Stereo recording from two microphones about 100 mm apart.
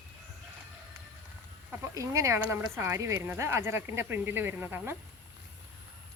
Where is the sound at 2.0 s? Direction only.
30° right (ahead or behind).